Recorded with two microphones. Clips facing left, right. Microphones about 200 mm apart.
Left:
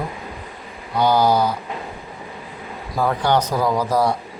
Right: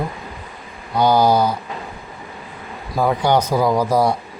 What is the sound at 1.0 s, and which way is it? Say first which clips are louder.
Speech: right 2 dB; 10° right (ahead or behind).